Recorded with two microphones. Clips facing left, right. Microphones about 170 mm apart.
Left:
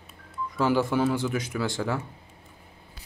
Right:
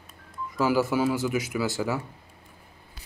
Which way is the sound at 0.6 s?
5° right (ahead or behind).